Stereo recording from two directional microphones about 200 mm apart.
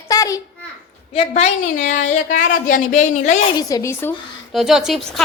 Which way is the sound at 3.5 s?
15° left (ahead or behind).